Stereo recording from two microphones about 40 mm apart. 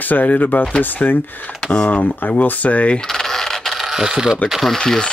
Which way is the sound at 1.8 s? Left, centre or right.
Left.